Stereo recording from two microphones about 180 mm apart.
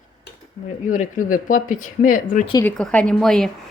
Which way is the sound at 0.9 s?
45° left (ahead or behind).